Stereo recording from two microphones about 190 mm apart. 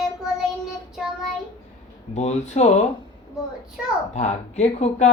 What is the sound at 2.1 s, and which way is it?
Speech, 35° left (ahead or behind).